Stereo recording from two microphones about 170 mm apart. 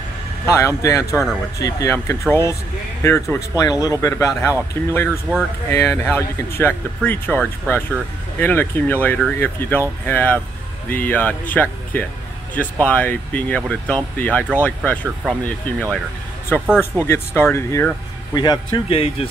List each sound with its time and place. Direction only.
0.5 s speech: 15° left (ahead or behind)
16.6 s speech: 5° right (ahead or behind)
17.0 s speech: 15° left (ahead or behind); by 19.2 s 35° left (ahead or behind)